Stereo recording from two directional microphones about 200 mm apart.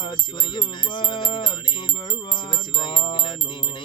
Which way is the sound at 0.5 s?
25° left (ahead or behind).